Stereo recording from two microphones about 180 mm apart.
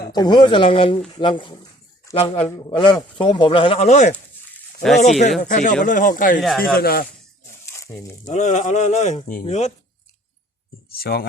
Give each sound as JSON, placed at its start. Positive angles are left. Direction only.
{"t": 0.1, "sound": "speech", "side_deg": 25}
{"t": 4.1, "sound": "a sound", "side_deg": 5}
{"t": 5.4, "sound": "speech", "side_deg": 45}
{"t": 7.7, "sound": "speech", "side_deg": 15}
{"t": 8.3, "sound": "speech", "side_deg": 40}
{"t": 10.9, "sound": "speech", "side_deg": 60}